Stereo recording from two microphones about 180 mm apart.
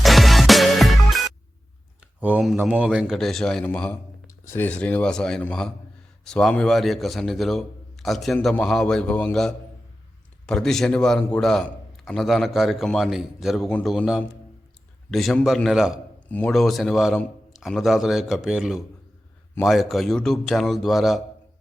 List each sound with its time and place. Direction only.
0.0 s music: centre (ahead or behind)
2.2 s a man's voice: 5° right (ahead or behind)